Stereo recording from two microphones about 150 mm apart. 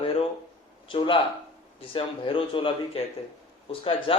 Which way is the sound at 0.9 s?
35° left (ahead or behind).